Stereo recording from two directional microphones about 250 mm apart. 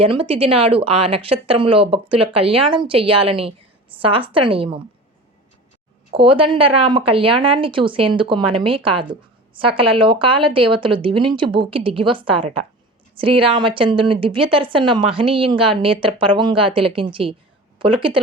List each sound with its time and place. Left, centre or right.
0.0 s a woman's voice: right
6.1 s a woman's voice: right